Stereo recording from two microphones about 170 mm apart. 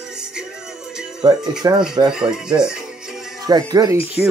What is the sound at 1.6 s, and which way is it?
Speech, 20° right (ahead or behind).